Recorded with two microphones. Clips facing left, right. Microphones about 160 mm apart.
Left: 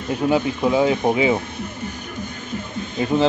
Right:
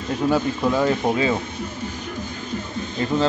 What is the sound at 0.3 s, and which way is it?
Speech, 15° left (ahead or behind).